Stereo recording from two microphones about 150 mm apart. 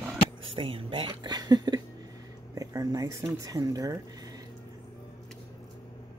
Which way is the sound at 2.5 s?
20° right (ahead or behind).